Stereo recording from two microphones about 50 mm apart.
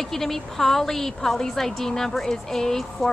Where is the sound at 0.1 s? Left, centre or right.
Centre.